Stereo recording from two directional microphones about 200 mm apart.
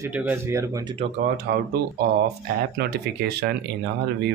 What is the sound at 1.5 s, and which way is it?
Speech, 50° right (ahead or behind).